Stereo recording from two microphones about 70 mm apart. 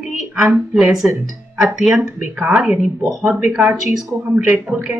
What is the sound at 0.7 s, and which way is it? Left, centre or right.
Speech, centre.